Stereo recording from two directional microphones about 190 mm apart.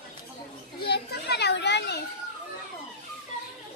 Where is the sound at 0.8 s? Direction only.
55° left (ahead or behind).